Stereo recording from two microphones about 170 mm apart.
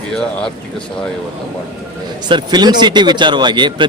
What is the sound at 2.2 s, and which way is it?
A man's voice, 25° right (ahead or behind).